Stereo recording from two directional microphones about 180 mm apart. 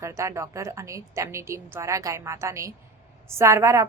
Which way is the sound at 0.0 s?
15° right (ahead or behind).